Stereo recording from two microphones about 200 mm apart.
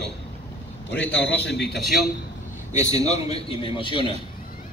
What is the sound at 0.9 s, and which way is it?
Speech, 60° left (ahead or behind).